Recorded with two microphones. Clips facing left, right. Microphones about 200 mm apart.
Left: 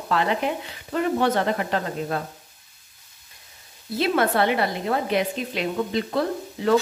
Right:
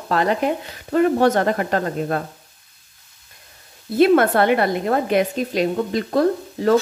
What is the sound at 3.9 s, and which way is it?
Speech, 55° right (ahead or behind).